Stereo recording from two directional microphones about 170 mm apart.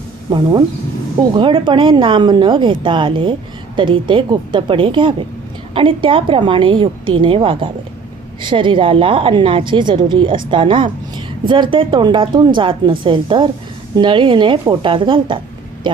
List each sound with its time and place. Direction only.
0.3 s a woman's voice: 25° right (ahead or behind)